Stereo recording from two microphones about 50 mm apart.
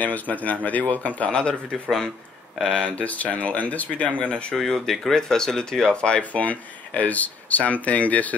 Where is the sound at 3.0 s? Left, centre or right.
Left.